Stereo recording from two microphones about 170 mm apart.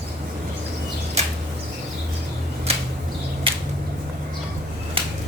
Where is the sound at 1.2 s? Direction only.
40° right (ahead or behind).